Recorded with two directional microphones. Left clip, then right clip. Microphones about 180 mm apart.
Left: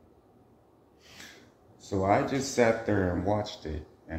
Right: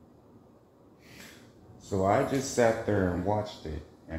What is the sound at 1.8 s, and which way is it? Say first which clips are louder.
Speech: even; 20° left (ahead or behind).